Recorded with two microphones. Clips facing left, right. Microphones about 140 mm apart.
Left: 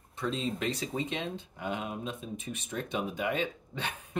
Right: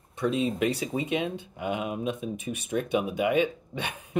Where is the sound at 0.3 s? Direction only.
15° right (ahead or behind).